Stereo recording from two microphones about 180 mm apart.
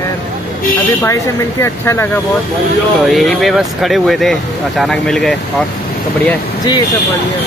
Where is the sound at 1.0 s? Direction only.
15° left (ahead or behind).